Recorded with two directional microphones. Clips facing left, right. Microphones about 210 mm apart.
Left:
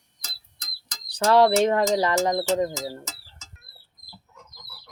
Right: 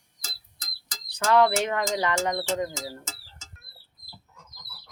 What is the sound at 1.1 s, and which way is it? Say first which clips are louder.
Speech: left 3 dB; 35° left (ahead or behind).